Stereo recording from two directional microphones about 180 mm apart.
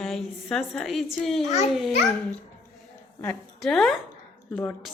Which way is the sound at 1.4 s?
40° left (ahead or behind).